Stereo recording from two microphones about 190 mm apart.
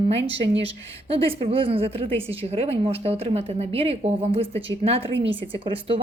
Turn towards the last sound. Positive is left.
turn(degrees=-25)  # may be behind; listen again after turning